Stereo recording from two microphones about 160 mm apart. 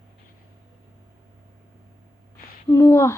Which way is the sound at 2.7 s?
20° left (ahead or behind).